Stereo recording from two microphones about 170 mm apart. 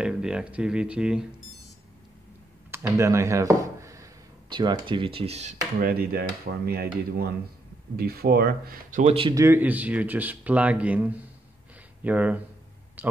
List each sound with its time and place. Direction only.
0.0 s speech: 5° right (ahead or behind)
2.7 s speech: 20° right (ahead or behind); by 5.6 s 40° right (ahead or behind)
5.8 s speech: 60° right (ahead or behind)
9.0 s speech: 35° right (ahead or behind)
9.3 s speech: 15° right (ahead or behind)
13.0 s a sound: 10° right (ahead or behind)